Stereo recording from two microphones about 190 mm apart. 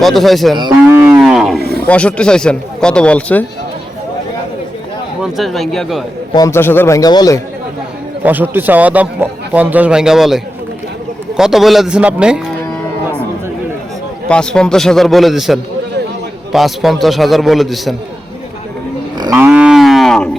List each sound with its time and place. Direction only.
0.0 s speech: centre (ahead or behind)
0.5 s moo: 25° right (ahead or behind)
1.1 s cattle: 5° right (ahead or behind)
1.6 s a sound: 55° right (ahead or behind)
1.9 s speech: 5° left (ahead or behind)
5.2 s speech: centre (ahead or behind)
6.3 s a man's voice: 15° left (ahead or behind)
8.2 s a man's voice: 10° right (ahead or behind)
14.3 s speech: 5° left (ahead or behind)
19.2 s cattle: 15° right (ahead or behind)
19.5 s moo: 5° right (ahead or behind)